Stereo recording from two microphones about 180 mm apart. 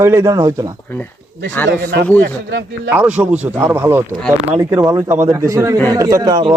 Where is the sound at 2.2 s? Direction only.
75° right (ahead or behind).